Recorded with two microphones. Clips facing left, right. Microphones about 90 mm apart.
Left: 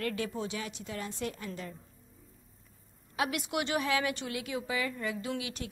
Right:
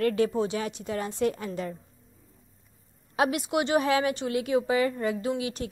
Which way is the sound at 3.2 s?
25° right (ahead or behind).